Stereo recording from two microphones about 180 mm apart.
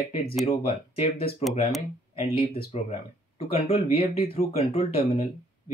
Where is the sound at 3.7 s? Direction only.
55° left (ahead or behind).